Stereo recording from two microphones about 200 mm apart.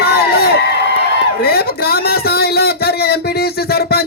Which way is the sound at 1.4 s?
50° left (ahead or behind).